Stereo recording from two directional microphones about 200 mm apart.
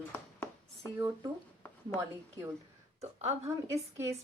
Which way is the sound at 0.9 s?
20° right (ahead or behind).